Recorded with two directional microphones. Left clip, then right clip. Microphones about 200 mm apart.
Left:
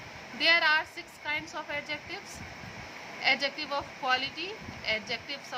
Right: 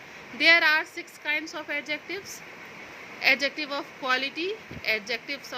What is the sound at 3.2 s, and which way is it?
A woman's voice, 20° right (ahead or behind).